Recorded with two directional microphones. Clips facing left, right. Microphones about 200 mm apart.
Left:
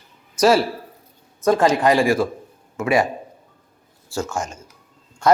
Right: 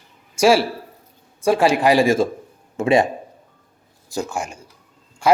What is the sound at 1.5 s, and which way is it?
Speech, 10° right (ahead or behind).